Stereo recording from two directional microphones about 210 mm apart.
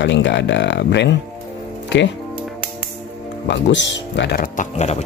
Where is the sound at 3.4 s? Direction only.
60° left (ahead or behind).